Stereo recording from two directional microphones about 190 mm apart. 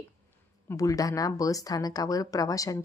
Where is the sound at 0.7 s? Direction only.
15° left (ahead or behind).